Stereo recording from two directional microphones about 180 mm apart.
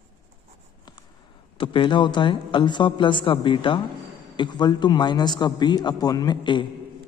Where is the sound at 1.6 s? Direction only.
30° left (ahead or behind).